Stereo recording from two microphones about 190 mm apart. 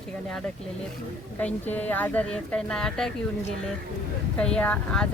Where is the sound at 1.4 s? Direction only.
10° left (ahead or behind).